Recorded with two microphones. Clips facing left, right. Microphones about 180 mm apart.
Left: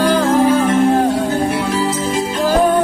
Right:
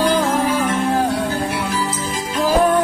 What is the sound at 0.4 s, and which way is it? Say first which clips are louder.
Music: left 6 dB; 30° left (ahead or behind).